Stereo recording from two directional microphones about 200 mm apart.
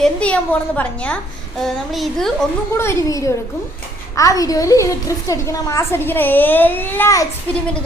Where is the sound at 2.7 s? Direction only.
15° left (ahead or behind).